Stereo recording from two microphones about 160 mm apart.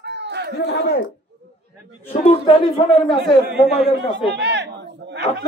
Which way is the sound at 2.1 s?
40° left (ahead or behind).